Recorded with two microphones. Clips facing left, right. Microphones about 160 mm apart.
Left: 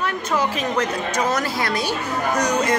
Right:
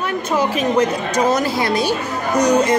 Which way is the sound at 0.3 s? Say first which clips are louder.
Right 5 dB; 20° right (ahead or behind).